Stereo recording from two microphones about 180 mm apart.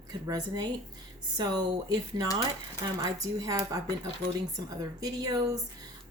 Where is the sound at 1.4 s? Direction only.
20° right (ahead or behind).